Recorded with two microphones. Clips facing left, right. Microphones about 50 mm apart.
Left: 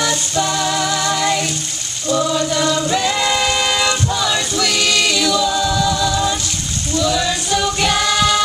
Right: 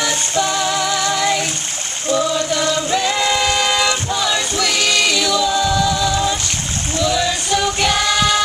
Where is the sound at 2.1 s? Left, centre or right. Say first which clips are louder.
Left 1 dB; centre.